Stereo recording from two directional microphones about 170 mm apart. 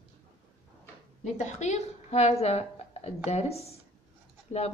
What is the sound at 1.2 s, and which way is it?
A woman's voice, 45° left (ahead or behind).